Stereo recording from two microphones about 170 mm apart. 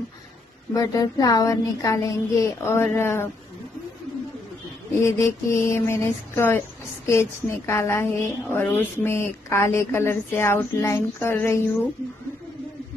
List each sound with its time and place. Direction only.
0.7 s a woman's voice: 20° left (ahead or behind)
5.0 s a woman's voice: 15° left (ahead or behind)